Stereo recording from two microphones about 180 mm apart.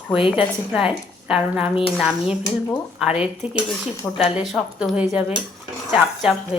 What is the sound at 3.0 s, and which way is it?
A woman's voice, 5° right (ahead or behind).